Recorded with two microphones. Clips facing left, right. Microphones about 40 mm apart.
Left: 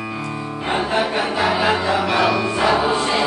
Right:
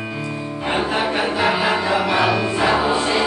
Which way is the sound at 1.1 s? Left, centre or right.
Centre.